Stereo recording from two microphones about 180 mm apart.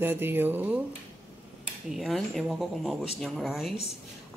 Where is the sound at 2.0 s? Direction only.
Centre (ahead or behind).